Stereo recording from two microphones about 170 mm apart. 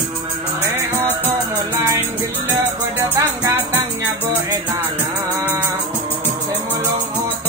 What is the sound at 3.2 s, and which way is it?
Music, 15° right (ahead or behind).